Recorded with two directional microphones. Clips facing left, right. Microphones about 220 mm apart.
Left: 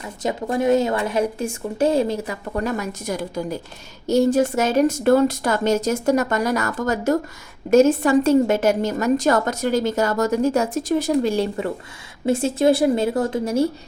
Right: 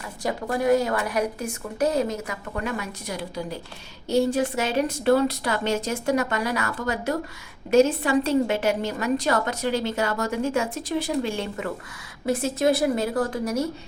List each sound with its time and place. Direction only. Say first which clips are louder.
0.2 s a woman's voice: left 4 dB; 20° left (ahead or behind)